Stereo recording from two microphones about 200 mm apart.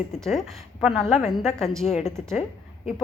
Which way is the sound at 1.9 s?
35° left (ahead or behind).